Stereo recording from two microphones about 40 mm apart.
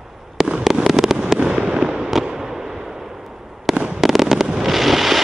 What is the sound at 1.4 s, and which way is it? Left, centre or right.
Fireworks, right.